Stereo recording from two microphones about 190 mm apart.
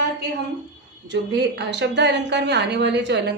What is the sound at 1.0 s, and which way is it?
A woman's voice, 65° right (ahead or behind).